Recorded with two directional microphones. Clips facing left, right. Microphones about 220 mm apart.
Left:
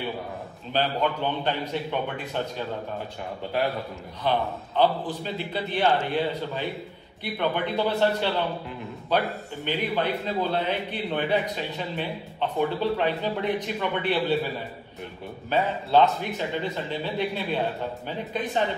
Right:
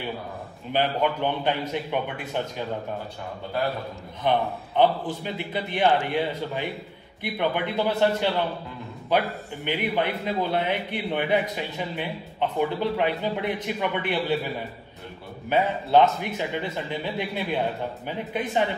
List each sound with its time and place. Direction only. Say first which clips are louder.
0.7 s a man's voice: right 1 dB; 15° right (ahead or behind)
4.2 s a man's voice: right 2 dB; 20° right (ahead or behind)
9.6 s a man's voice: right 1 dB; 15° right (ahead or behind)
15.5 s a man's voice: right 2 dB; 15° right (ahead or behind)